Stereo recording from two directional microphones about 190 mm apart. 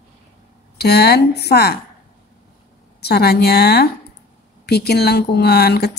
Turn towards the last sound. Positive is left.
turn(degrees=55)  # may be behind; listen again after turning